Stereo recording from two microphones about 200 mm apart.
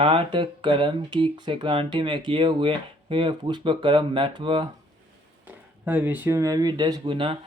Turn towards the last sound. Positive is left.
turn(degrees=-25)  # may be behind; listen again after turning